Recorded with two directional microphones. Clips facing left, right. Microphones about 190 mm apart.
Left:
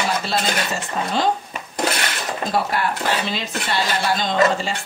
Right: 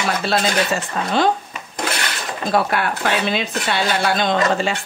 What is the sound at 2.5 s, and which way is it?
A woman's voice, 65° right (ahead or behind).